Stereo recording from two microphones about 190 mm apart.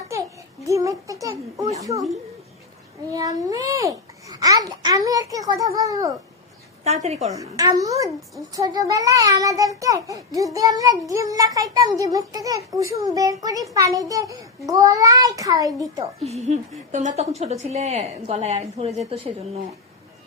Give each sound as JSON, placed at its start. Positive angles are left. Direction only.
{"t": 0.6, "sound": "speech", "side_deg": -15}
{"t": 3.1, "sound": "a child's voice", "side_deg": -20}
{"t": 6.8, "sound": "a woman's voice", "side_deg": -35}
{"t": 7.3, "sound": "a child's voice", "side_deg": -20}
{"t": 16.2, "sound": "a woman's voice", "side_deg": -35}